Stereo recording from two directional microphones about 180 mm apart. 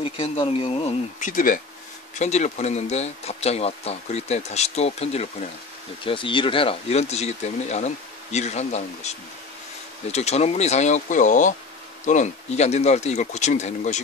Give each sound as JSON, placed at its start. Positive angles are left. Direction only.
{"t": 0.0, "sound": "speech", "side_deg": 30}
{"t": 10.1, "sound": "speech", "side_deg": 35}